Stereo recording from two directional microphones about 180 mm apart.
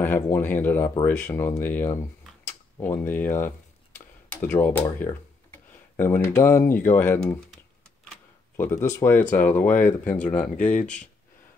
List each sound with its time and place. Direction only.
0.0 s speech: 10° left (ahead or behind)
8.5 s speech: 15° left (ahead or behind)
10.5 s speech: 40° left (ahead or behind)